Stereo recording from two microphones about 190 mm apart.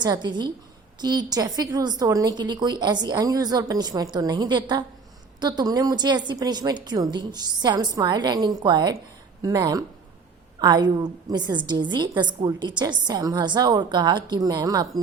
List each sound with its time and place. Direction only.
0.0 s a woman's voice: 20° right (ahead or behind)